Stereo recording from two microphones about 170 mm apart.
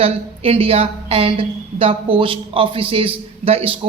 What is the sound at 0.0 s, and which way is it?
A woman's voice, 35° right (ahead or behind).